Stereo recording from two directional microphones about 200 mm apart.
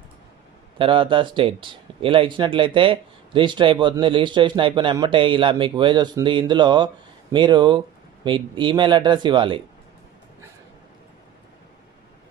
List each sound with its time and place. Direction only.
0.7 s speech: 25° right (ahead or behind)